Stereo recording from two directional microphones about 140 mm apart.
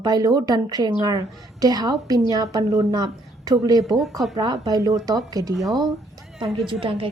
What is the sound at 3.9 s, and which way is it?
Speech, centre (ahead or behind).